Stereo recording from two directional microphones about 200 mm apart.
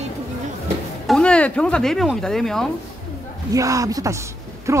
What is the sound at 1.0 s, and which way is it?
Speech, 5° left (ahead or behind).